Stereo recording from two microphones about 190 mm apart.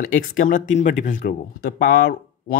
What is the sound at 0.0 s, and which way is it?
Speech, 50° left (ahead or behind).